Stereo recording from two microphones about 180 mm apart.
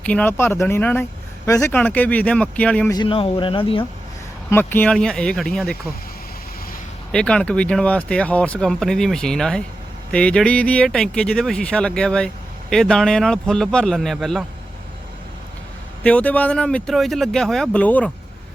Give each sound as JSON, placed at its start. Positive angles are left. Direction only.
{"t": 0.0, "sound": "speech", "side_deg": 5}
{"t": 2.9, "sound": "speech", "side_deg": 25}
{"t": 4.4, "sound": "speech", "side_deg": 10}
{"t": 7.1, "sound": "speech", "side_deg": 5}
{"t": 16.0, "sound": "speech", "side_deg": 10}